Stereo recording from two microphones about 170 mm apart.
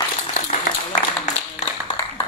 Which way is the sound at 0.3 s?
45° left (ahead or behind).